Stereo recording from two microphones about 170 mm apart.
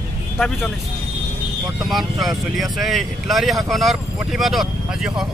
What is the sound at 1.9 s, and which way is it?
Speech, centre (ahead or behind).